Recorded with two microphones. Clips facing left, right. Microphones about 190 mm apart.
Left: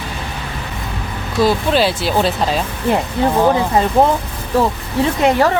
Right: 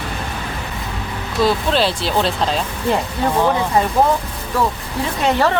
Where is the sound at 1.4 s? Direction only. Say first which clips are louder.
Left 2 dB; 5° left (ahead or behind).